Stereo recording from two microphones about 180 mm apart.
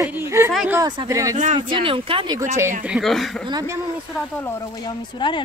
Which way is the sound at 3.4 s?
25° right (ahead or behind).